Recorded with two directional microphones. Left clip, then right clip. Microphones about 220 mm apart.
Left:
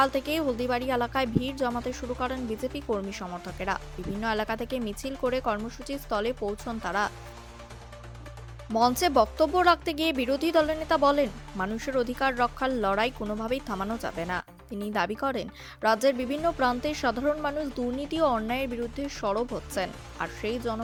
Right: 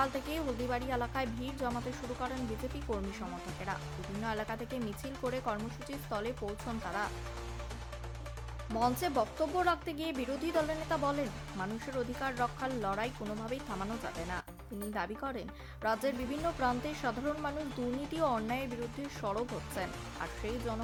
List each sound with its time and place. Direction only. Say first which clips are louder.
0.0 s speech: left 9 dB; 35° left (ahead or behind)
8.7 s speech: left 9 dB; 40° left (ahead or behind)